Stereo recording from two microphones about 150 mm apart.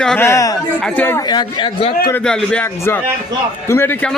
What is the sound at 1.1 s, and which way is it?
Speech, 30° left (ahead or behind).